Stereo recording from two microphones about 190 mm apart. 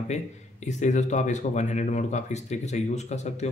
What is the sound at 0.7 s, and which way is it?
Speech, 40° left (ahead or behind).